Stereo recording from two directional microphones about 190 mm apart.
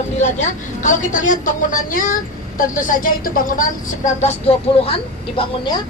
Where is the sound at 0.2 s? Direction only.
40° left (ahead or behind).